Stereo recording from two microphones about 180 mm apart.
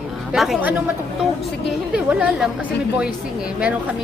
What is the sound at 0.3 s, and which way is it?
Speech, centre (ahead or behind).